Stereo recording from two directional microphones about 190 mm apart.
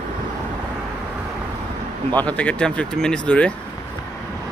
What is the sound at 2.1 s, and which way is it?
Speech, 5° left (ahead or behind).